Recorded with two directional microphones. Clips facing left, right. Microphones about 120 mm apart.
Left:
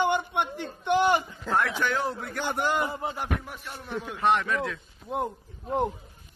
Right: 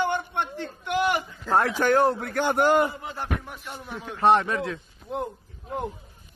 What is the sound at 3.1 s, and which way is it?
Speech, 10° left (ahead or behind).